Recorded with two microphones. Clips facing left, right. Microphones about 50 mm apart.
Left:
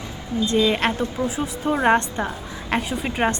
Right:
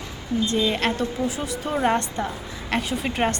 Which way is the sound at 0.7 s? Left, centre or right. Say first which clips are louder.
Left 2 dB; centre.